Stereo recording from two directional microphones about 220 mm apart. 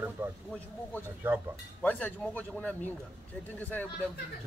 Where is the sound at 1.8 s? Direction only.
5° left (ahead or behind).